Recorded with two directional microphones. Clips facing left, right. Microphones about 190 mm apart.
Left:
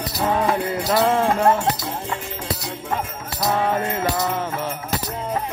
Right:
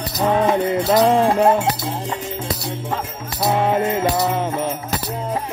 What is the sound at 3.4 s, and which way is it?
Music, 20° right (ahead or behind).